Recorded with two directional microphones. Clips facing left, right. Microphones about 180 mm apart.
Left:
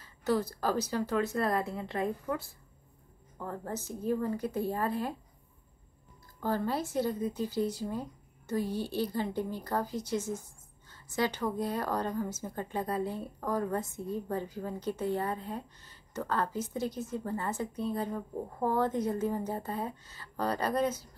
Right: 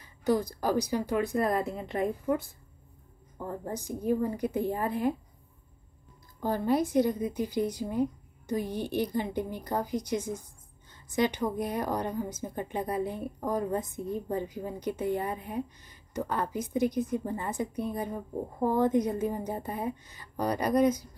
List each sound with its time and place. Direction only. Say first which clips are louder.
0.0 s a woman's voice: right 3 dB; 15° right (ahead or behind)
6.4 s a woman's voice: right 4 dB; 15° right (ahead or behind)